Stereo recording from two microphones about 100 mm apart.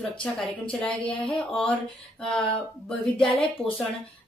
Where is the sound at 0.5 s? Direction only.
10° left (ahead or behind).